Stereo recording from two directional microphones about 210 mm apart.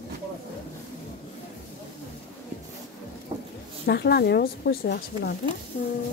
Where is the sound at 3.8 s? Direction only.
50° left (ahead or behind).